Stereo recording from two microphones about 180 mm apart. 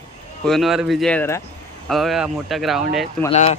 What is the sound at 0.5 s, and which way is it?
Speech, centre (ahead or behind).